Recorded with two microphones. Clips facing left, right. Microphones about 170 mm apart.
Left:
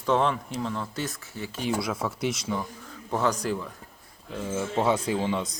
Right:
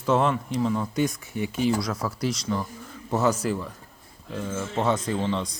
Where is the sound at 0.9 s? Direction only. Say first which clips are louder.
Right 8 dB; 15° right (ahead or behind).